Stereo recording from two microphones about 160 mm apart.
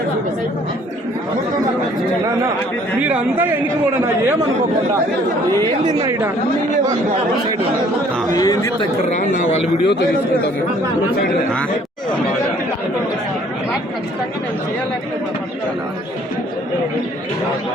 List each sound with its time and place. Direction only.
3.0 s a man's voice: 10° right (ahead or behind)
5.8 s speech: 25° right (ahead or behind)
8.3 s speech: 25° left (ahead or behind)
9.1 s a man's voice: 55° left (ahead or behind); by 10.0 s 75° left (ahead or behind)